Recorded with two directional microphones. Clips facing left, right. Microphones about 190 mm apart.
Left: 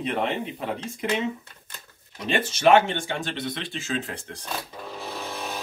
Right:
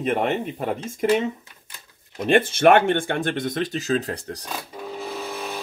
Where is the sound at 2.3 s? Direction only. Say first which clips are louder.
Right 3 dB; 55° right (ahead or behind); by 4.4 s 40° right (ahead or behind).